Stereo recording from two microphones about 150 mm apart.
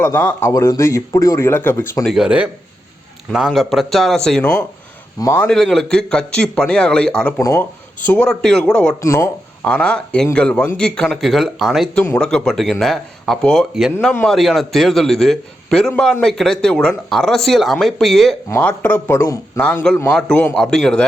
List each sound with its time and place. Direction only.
0.0 s a man's voice: 15° left (ahead or behind)
2.0 s speech: 5° right (ahead or behind)
5.2 s a man's voice: 15° left (ahead or behind)
5.5 s speech: 5° left (ahead or behind)
7.3 s a man's voice: 20° left (ahead or behind)
8.0 s speech: 10° left (ahead or behind)
9.0 s a man's voice: 20° left (ahead or behind)
9.6 s a man's voice: 5° left (ahead or behind)
18.4 s a man's voice: 15° left (ahead or behind)